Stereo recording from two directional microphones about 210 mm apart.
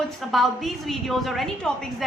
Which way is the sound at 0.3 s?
Centre (ahead or behind).